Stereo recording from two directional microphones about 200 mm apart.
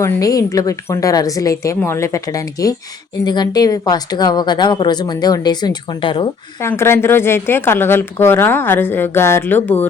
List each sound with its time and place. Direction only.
0.0 s a woman's voice: 15° left (ahead or behind)
6.6 s a woman's voice: 15° left (ahead or behind)